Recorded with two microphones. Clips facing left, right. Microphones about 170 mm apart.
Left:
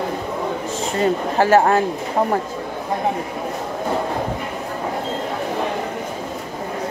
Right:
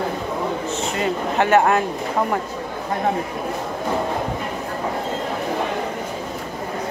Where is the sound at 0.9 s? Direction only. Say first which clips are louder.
Left 4 dB; 35° left (ahead or behind).